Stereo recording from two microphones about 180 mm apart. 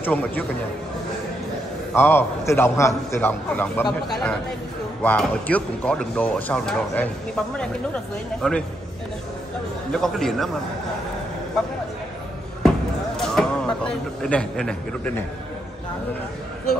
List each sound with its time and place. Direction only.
0.0 s a man's voice: 10° left (ahead or behind)
2.0 s a man's voice: 10° left (ahead or behind)
9.9 s speech: centre (ahead or behind)
12.6 s a sound: centre (ahead or behind)